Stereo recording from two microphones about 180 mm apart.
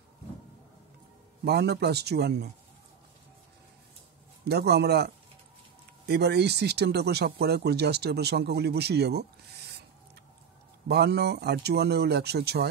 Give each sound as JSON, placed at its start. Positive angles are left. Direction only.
{"t": 1.4, "sound": "speech", "side_deg": -65}
{"t": 4.5, "sound": "speech", "side_deg": -65}
{"t": 10.9, "sound": "speech", "side_deg": -65}